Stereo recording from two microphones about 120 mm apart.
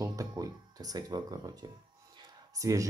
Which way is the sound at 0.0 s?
30° right (ahead or behind).